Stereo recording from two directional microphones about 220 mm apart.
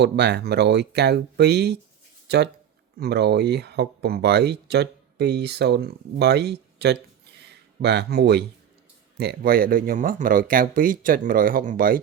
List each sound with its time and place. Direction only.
0.0 s speech: 50° right (ahead or behind)